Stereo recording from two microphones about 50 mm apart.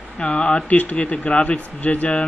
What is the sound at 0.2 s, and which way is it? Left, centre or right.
Speech, left.